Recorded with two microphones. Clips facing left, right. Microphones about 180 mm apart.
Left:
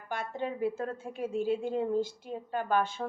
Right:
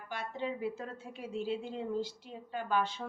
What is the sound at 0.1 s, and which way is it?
A woman's voice, 50° left (ahead or behind).